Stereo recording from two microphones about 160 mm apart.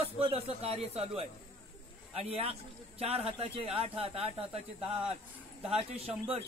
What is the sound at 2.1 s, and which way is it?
A man's voice, 40° right (ahead or behind).